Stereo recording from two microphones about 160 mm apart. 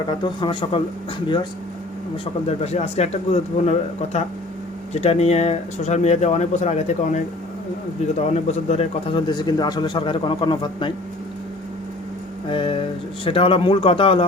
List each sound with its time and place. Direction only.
0.3 s speech: 30° left (ahead or behind)
2.5 s speech: 40° left (ahead or behind)
8.2 s speech: 45° left (ahead or behind)
12.5 s speech: 35° left (ahead or behind)